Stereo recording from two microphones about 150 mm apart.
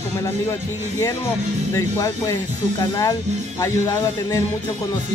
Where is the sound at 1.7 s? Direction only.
25° left (ahead or behind).